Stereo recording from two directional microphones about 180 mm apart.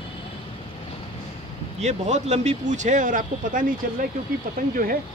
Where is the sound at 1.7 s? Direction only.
40° right (ahead or behind).